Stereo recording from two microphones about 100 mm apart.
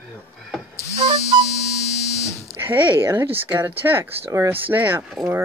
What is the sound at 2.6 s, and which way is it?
Speech, 20° right (ahead or behind).